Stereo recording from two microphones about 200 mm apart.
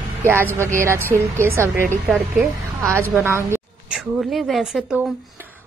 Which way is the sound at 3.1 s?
10° right (ahead or behind).